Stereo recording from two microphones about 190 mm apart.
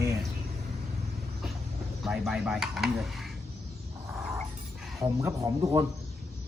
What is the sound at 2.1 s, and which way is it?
Speech, centre (ahead or behind).